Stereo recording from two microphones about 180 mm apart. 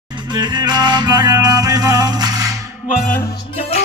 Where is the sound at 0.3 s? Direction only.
25° right (ahead or behind).